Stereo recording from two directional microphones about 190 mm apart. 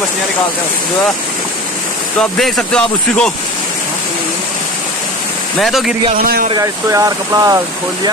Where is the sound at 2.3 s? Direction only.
Centre (ahead or behind).